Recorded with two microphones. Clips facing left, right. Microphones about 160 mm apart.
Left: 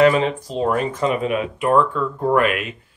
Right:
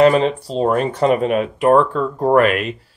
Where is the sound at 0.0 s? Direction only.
35° right (ahead or behind).